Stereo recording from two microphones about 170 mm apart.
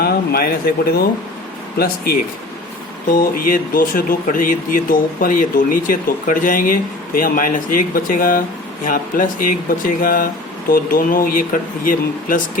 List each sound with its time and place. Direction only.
0.0 s speech: 65° left (ahead or behind)
3.1 s speech: 55° left (ahead or behind)